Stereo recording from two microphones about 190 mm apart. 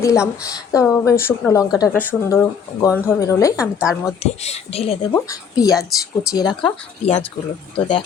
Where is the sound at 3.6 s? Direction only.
5° right (ahead or behind).